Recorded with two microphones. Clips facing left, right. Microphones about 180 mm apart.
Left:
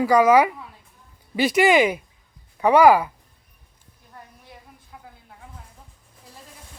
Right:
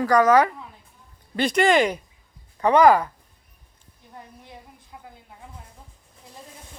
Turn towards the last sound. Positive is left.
turn(degrees=-20)  # may be behind; listen again after turning